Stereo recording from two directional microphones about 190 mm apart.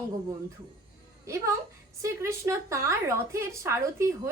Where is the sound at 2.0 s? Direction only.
15° right (ahead or behind).